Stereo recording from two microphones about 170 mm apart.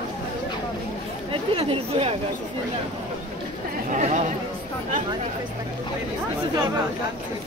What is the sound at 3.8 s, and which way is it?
Chatter, 45° right (ahead or behind).